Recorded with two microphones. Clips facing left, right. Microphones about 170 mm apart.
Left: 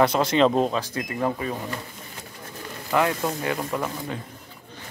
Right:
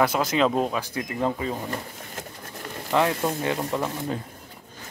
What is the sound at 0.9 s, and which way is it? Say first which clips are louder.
Speech: even; 20° right (ahead or behind).